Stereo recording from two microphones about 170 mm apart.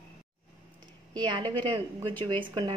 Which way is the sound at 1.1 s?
25° right (ahead or behind).